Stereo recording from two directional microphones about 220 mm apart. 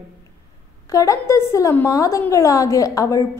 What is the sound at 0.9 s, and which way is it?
A woman's voice, 15° left (ahead or behind).